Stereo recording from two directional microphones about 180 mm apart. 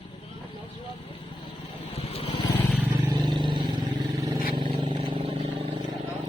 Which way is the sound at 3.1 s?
25° right (ahead or behind).